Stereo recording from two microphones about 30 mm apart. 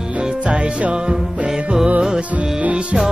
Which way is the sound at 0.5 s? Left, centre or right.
Right.